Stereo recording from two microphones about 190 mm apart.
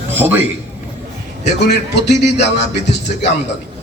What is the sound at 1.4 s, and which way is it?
Speech, 60° left (ahead or behind).